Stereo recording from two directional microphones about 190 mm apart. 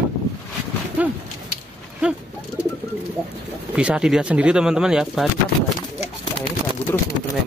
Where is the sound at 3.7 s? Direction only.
5° right (ahead or behind).